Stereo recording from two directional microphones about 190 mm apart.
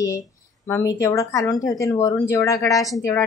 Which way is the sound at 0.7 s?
15° left (ahead or behind).